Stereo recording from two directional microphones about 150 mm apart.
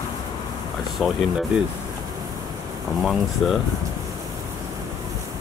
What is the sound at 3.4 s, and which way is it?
Speech, centre (ahead or behind).